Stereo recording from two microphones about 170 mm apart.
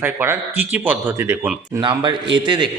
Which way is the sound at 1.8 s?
25° right (ahead or behind).